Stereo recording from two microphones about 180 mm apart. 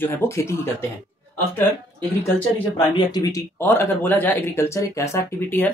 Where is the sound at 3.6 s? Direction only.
10° left (ahead or behind).